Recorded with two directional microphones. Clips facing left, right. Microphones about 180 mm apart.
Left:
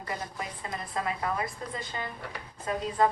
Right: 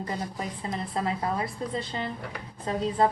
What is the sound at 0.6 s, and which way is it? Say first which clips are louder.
A woman's voice: right 3 dB; 30° right (ahead or behind).